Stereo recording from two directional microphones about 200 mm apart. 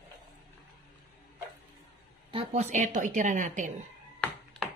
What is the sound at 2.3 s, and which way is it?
A woman's voice, 30° right (ahead or behind).